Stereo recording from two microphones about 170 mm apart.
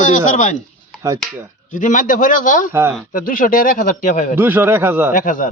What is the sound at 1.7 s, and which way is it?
Speech, 50° left (ahead or behind).